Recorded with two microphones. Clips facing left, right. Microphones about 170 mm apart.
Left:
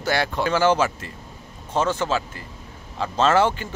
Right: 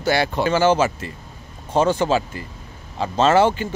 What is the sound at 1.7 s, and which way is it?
Speech, 35° right (ahead or behind).